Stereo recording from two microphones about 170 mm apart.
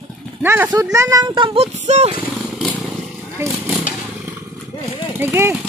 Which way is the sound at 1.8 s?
40° right (ahead or behind).